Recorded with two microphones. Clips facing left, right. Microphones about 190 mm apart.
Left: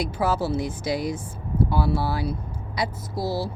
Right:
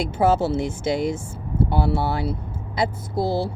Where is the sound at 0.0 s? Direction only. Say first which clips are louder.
Right 5 dB; 25° right (ahead or behind).